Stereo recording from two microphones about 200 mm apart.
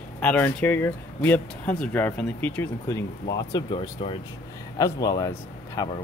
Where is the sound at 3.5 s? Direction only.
30° left (ahead or behind).